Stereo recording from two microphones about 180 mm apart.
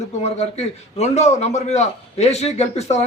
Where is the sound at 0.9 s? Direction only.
35° left (ahead or behind).